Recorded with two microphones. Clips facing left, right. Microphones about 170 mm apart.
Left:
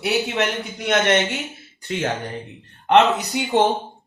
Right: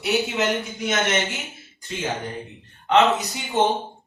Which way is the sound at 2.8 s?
65° left (ahead or behind).